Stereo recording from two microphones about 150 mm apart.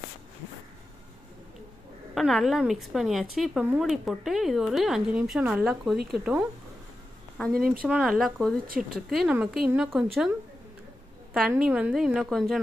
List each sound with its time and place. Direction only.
2.1 s a woman's voice: centre (ahead or behind)
7.5 s speech: 75° right (ahead or behind)
7.9 s a woman's voice: centre (ahead or behind)
11.3 s a woman's voice: 5° right (ahead or behind)